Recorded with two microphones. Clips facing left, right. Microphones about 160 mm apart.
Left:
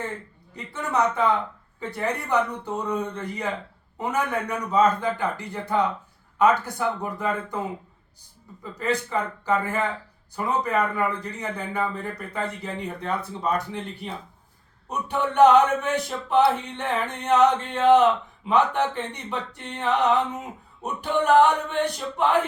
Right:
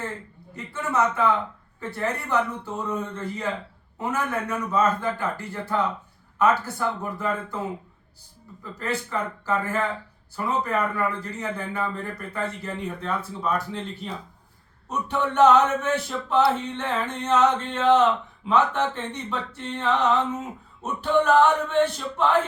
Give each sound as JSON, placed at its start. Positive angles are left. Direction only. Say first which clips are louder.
{"t": 0.5, "sound": "speech", "louder": "even", "side_deg": 15}
{"t": 8.6, "sound": "speech", "louder": "left 3 dB", "side_deg": 15}